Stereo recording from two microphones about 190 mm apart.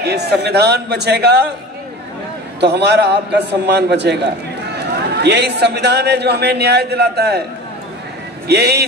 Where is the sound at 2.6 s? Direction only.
65° right (ahead or behind).